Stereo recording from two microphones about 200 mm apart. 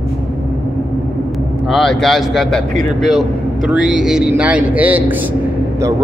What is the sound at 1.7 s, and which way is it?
Speech, centre (ahead or behind).